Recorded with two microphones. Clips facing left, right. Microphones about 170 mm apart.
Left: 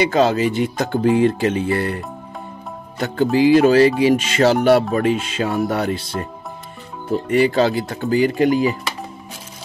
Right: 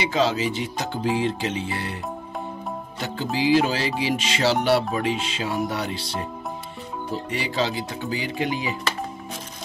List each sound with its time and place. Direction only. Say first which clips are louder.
0.0 s speech: left 6 dB; 50° left (ahead or behind)
3.3 s speech: left 9 dB; 55° left (ahead or behind)